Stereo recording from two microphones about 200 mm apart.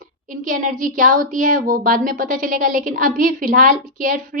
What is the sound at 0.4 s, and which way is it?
A woman's voice, 40° right (ahead or behind).